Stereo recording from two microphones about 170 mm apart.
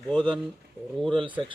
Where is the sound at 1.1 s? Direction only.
30° right (ahead or behind).